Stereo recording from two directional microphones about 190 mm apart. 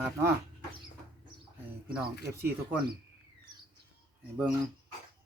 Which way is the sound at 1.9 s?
10° right (ahead or behind).